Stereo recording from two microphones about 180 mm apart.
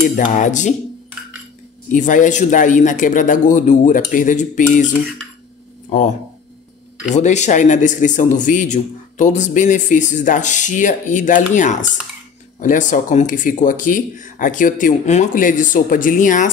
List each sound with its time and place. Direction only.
0.0 s speech: 45° left (ahead or behind)
1.9 s speech: 45° left (ahead or behind)
5.9 s speech: 45° left (ahead or behind)